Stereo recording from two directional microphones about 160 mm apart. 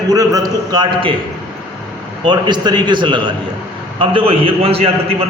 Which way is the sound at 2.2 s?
30° right (ahead or behind).